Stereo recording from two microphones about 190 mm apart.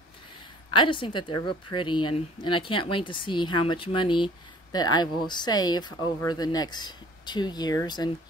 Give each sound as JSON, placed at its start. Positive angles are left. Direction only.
{"t": 0.7, "sound": "a woman's voice", "side_deg": 25}